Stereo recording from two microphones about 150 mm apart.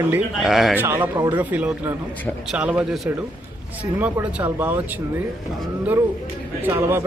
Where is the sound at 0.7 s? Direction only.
15° right (ahead or behind).